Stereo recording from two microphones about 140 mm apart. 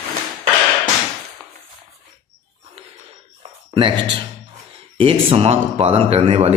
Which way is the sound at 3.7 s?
35° right (ahead or behind).